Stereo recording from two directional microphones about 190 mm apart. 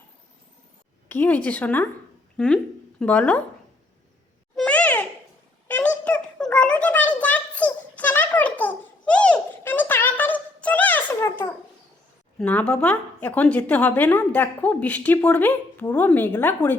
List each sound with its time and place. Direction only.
1.0 s a woman's voice: 10° left (ahead or behind)
4.5 s babbling: 5° left (ahead or behind)
5.6 s a sound: 10° left (ahead or behind)
12.4 s a woman's voice: 5° left (ahead or behind)